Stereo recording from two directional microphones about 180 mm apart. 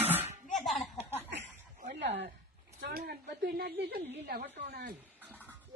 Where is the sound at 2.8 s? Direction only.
55° right (ahead or behind).